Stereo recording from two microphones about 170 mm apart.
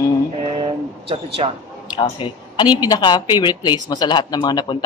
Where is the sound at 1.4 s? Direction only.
35° right (ahead or behind).